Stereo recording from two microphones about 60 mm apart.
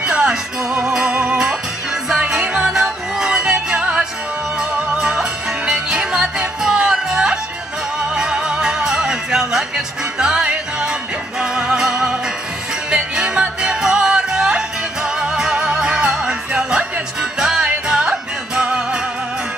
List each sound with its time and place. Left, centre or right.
0.0 s music: centre